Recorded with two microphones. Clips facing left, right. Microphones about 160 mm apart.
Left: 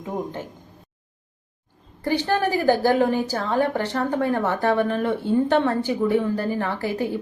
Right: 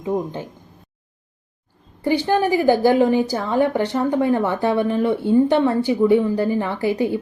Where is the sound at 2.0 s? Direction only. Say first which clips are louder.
Right 4 dB; 15° right (ahead or behind).